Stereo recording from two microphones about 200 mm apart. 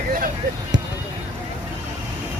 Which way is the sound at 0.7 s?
65° right (ahead or behind).